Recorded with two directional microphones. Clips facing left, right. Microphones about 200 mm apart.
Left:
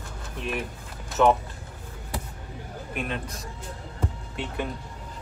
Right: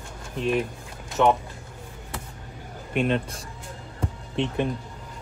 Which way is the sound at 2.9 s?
30° right (ahead or behind).